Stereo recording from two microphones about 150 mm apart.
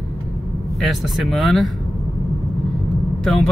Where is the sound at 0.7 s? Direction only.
Centre (ahead or behind).